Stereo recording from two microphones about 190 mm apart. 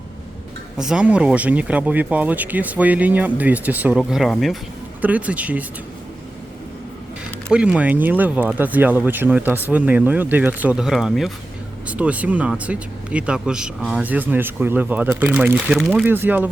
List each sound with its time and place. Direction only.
0.8 s speech: 5° right (ahead or behind)
7.4 s speech: 5° right (ahead or behind)